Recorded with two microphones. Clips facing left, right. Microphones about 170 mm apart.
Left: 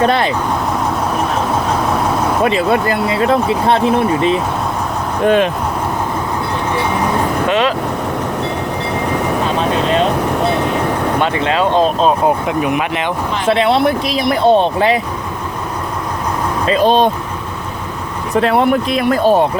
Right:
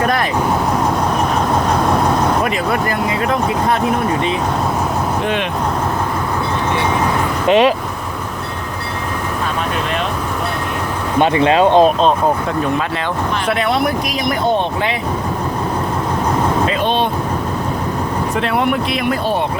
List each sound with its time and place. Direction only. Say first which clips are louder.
0.0 s speech: left 3 dB; 25° left (ahead or behind)
3.1 s speech: left 6 dB; 30° left (ahead or behind)
5.2 s speech: left 7 dB; 40° left (ahead or behind)
7.4 s speech: right 5 dB; 15° right (ahead or behind)
11.2 s speech: right 7 dB; 20° right (ahead or behind)
13.5 s speech: left 6 dB; 25° left (ahead or behind)
16.8 s speech: left 10 dB; 40° left (ahead or behind)
18.4 s speech: left 5 dB; 40° left (ahead or behind)